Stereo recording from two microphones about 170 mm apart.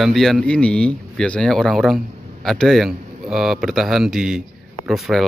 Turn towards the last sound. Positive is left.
turn(degrees=0)  # may be behind; listen again after turning